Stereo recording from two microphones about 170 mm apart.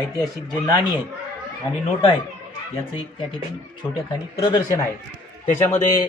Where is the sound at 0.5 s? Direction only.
25° left (ahead or behind).